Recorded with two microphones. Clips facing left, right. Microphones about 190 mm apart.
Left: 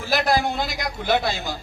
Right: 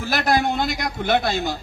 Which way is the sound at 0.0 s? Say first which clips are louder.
Right 1 dB; 55° right (ahead or behind).